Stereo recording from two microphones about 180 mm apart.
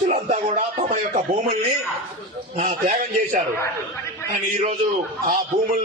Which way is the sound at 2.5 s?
50° right (ahead or behind).